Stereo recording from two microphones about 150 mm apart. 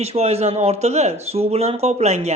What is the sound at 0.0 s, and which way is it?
Speech, 45° right (ahead or behind).